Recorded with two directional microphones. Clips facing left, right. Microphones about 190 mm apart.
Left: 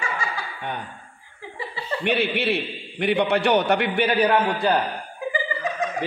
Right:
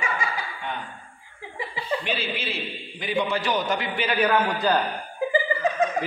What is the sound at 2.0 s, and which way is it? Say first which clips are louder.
A man's voice: left 7 dB; 65° left (ahead or behind).